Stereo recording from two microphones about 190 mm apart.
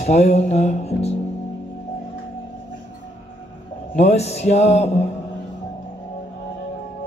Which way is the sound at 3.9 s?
35° left (ahead or behind).